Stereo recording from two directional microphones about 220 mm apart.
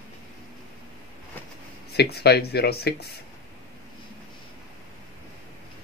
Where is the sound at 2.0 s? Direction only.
45° left (ahead or behind).